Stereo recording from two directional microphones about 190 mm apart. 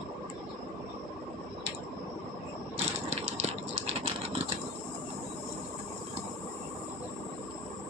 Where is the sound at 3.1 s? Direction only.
35° right (ahead or behind).